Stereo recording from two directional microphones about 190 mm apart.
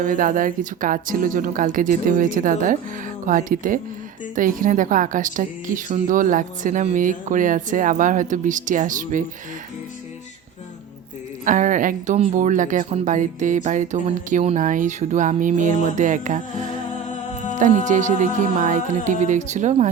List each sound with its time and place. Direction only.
0.0 s speech: 45° right (ahead or behind)
11.4 s speech: 40° right (ahead or behind)
17.5 s speech: 40° right (ahead or behind)